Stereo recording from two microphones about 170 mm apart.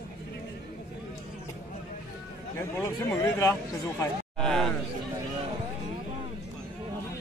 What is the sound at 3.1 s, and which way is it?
Speech, 15° left (ahead or behind).